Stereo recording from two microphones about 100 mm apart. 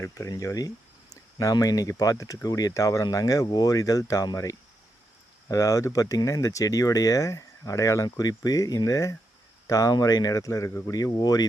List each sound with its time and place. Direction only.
0.0 s speech: 35° left (ahead or behind)